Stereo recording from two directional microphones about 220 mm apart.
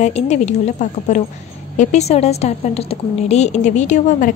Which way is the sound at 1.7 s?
30° left (ahead or behind).